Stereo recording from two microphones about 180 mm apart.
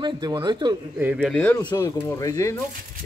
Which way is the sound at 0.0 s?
25° right (ahead or behind).